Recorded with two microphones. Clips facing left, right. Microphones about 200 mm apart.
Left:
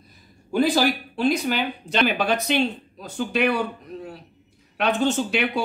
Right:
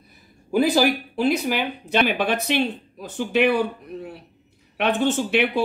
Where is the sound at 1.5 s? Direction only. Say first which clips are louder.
Right 2 dB; 10° right (ahead or behind).